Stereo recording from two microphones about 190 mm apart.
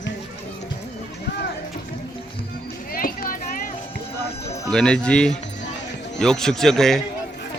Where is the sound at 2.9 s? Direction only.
50° left (ahead or behind).